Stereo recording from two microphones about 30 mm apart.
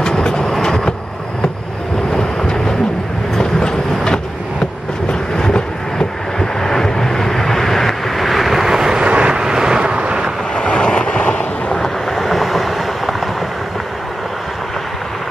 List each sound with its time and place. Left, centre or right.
0.1 s train: left
0.6 s vehicle: centre
2.1 s vehicle: left
3.3 s train: left
5.3 s vehicle: left; by 9.0 s centre
9.0 s vehicle: right
9.4 s vehicle: right
10.5 s vehicle: left
11.8 s vehicle: centre